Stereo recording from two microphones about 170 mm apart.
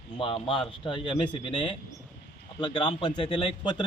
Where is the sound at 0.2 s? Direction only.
30° left (ahead or behind).